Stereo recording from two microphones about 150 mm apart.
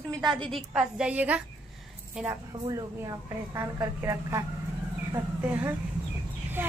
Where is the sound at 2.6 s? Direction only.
20° right (ahead or behind).